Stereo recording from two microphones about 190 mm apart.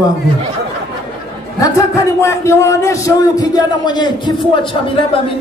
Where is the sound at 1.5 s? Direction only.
15° left (ahead or behind).